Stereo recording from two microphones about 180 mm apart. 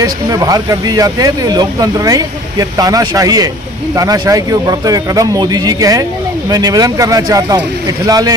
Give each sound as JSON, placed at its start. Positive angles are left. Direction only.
{"t": 0.0, "sound": "speech", "side_deg": -20}